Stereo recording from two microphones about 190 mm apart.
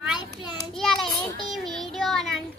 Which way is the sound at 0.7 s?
Centre (ahead or behind).